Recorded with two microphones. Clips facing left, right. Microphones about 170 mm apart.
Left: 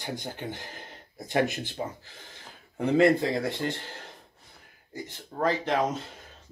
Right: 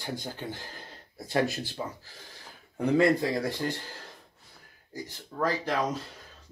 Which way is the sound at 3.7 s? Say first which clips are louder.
Left 1 dB; 60° left (ahead or behind).